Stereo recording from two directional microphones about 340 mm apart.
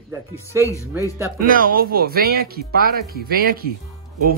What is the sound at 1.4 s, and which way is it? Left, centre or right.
Speech, right.